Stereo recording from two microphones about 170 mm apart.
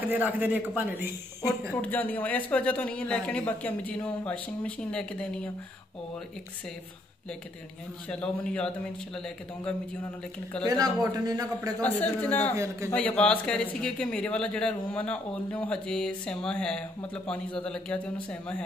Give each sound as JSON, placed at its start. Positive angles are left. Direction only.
{"t": 0.0, "sound": "a man's voice", "side_deg": -10}
{"t": 1.8, "sound": "speech", "side_deg": 10}
{"t": 8.1, "sound": "speech", "side_deg": 5}
{"t": 10.6, "sound": "speech", "side_deg": -25}
{"t": 11.8, "sound": "speech", "side_deg": 10}